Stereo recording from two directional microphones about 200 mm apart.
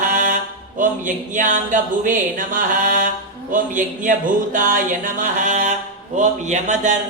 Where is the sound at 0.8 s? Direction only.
40° right (ahead or behind).